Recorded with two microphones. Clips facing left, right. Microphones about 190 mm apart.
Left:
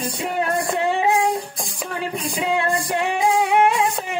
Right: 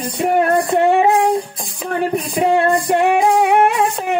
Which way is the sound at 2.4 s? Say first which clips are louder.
Right 7 dB; 55° right (ahead or behind).